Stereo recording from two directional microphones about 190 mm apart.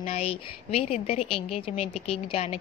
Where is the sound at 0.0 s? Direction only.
35° left (ahead or behind).